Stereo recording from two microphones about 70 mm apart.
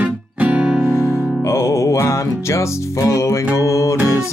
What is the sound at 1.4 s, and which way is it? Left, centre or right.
Music, left.